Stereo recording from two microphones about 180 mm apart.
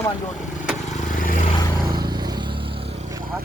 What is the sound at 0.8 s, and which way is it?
Vehicle, 45° left (ahead or behind).